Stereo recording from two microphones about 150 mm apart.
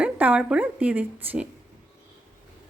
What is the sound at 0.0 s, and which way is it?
Speech, 10° right (ahead or behind).